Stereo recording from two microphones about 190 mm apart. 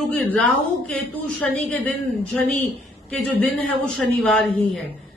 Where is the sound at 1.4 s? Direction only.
10° left (ahead or behind).